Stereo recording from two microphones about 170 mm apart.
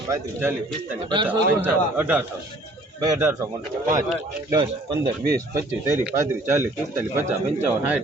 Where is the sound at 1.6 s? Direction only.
10° right (ahead or behind).